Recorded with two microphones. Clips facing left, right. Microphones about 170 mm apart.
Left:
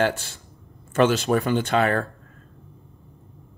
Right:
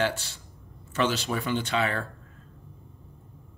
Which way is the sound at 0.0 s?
50° left (ahead or behind).